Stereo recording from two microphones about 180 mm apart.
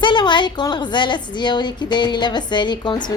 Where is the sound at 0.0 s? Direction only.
25° left (ahead or behind).